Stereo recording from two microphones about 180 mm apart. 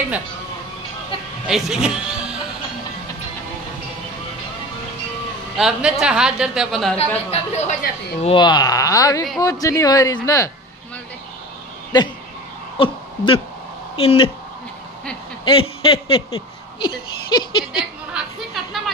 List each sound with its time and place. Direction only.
1.5 s speech: 5° right (ahead or behind)
5.6 s a woman's voice: 5° right (ahead or behind)
7.0 s speech: 35° left (ahead or behind); by 10.5 s 20° left (ahead or behind)
12.7 s a sound: 30° left (ahead or behind)
13.9 s speech: 30° left (ahead or behind)
15.4 s a man's voice: 30° left (ahead or behind)
17.3 s a sound: 25° left (ahead or behind)
18.1 s chatter: centre (ahead or behind)